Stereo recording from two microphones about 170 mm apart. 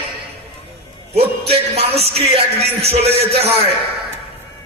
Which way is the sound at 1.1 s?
35° right (ahead or behind).